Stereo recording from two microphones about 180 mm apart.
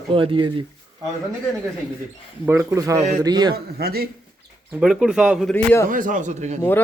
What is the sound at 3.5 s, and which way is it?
Speech, 60° right (ahead or behind).